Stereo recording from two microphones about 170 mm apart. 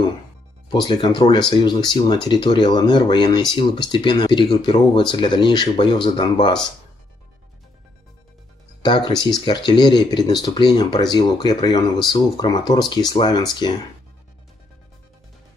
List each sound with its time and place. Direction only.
0.7 s speech: 25° left (ahead or behind)
8.8 s speech: 25° left (ahead or behind)